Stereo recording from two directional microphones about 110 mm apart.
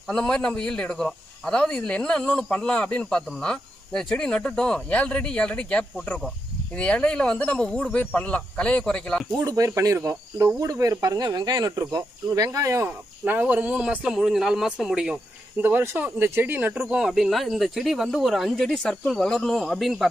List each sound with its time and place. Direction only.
0.1 s a man's voice: 5° left (ahead or behind)
9.3 s speech: 30° right (ahead or behind)
13.2 s speech: 15° right (ahead or behind)
15.6 s speech: 20° right (ahead or behind)
16.8 s speech: 5° right (ahead or behind)